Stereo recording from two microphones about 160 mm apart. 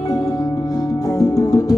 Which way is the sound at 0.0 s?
20° left (ahead or behind).